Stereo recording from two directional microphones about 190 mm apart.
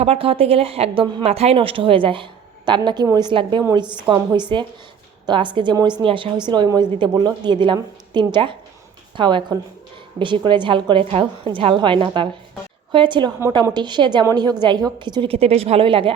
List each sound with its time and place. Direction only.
0.0 s a woman's voice: 30° right (ahead or behind)